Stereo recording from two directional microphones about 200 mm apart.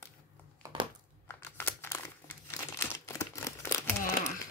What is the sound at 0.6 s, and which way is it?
Crushing, 15° right (ahead or behind).